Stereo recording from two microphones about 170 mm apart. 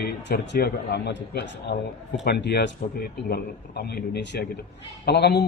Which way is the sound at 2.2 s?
75° left (ahead or behind).